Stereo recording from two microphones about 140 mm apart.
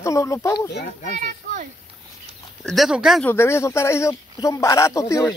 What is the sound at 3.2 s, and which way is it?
A man's voice, 15° left (ahead or behind).